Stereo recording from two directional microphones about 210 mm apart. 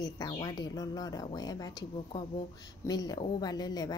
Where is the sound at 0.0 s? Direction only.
20° left (ahead or behind).